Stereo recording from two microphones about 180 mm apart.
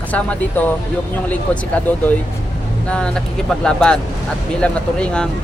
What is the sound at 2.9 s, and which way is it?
Speech, 5° left (ahead or behind).